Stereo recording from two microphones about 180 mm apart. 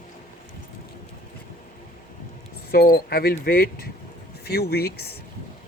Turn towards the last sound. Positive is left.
turn(degrees=60)  # may be behind; listen again after turning